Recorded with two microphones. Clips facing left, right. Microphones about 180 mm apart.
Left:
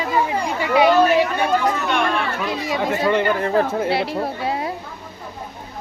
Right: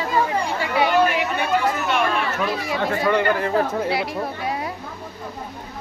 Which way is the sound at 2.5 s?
25° left (ahead or behind).